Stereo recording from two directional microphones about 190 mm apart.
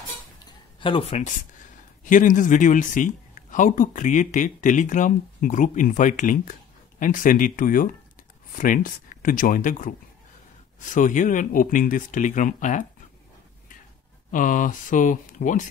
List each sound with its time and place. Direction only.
0.7 s speech: 25° left (ahead or behind)
2.0 s speech: 45° left (ahead or behind)
14.3 s speech: 45° left (ahead or behind)